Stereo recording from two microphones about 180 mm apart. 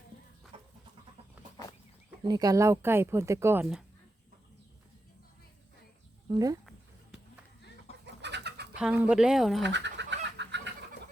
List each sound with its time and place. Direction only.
2.2 s speech: 20° right (ahead or behind)
6.2 s speech: 20° right (ahead or behind)
8.0 s bird: 75° right (ahead or behind)
8.7 s speech: 5° right (ahead or behind)
9.6 s chicken: 75° right (ahead or behind)
10.3 s fowl: 75° right (ahead or behind)